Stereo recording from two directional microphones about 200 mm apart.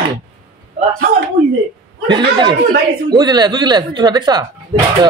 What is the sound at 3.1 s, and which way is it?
A man's voice, 20° right (ahead or behind).